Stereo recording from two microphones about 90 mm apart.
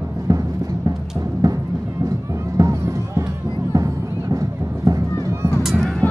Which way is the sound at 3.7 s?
40° right (ahead or behind).